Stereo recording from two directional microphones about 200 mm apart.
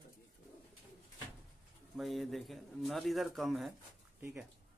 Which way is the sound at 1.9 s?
Centre (ahead or behind).